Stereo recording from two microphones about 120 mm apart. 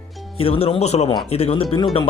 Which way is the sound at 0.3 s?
50° left (ahead or behind).